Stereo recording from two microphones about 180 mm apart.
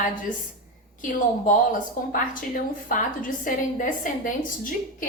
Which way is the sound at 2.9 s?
50° left (ahead or behind).